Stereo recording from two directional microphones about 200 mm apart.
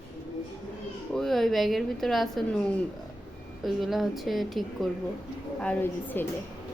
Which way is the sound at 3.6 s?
Centre (ahead or behind).